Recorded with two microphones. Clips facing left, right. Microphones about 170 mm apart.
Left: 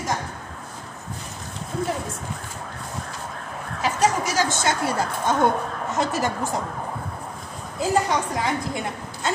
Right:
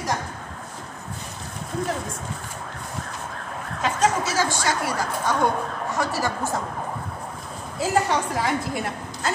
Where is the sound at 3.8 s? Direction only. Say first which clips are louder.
Even; 10° left (ahead or behind).